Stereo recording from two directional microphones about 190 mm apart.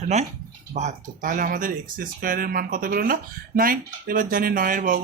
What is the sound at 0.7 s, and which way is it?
Speech, 40° right (ahead or behind).